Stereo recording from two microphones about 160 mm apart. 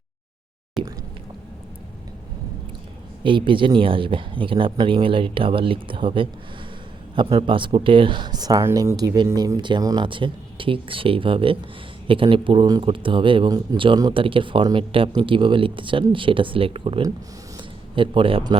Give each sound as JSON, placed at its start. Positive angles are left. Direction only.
{"t": 0.8, "sound": "speech", "side_deg": 0}
{"t": 3.2, "sound": "speech", "side_deg": -30}